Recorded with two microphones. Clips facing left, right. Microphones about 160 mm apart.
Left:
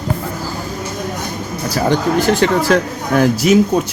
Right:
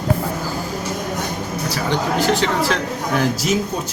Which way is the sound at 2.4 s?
50° left (ahead or behind).